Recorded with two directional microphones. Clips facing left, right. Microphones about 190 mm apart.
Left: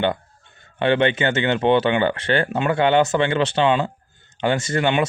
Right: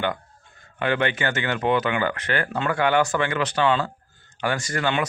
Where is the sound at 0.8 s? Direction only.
25° left (ahead or behind).